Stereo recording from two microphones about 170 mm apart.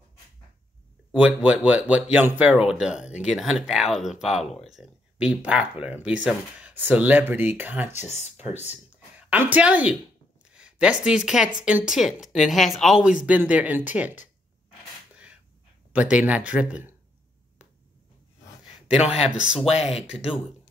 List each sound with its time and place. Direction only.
1.1 s speech: 5° right (ahead or behind)
8.1 s speech: 40° left (ahead or behind)
9.3 s speech: 10° right (ahead or behind)
15.9 s speech: 10° right (ahead or behind)
18.9 s speech: 5° right (ahead or behind)
19.6 s speech: 35° left (ahead or behind)